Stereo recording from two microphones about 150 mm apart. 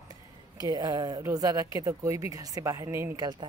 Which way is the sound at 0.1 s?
25° right (ahead or behind).